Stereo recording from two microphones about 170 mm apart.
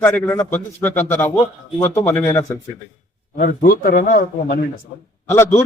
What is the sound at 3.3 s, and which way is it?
A man's voice, 60° left (ahead or behind).